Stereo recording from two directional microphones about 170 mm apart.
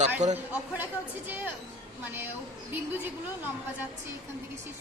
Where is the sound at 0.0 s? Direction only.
45° right (ahead or behind).